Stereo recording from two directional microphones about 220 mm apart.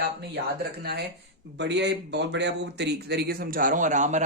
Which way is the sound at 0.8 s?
45° right (ahead or behind).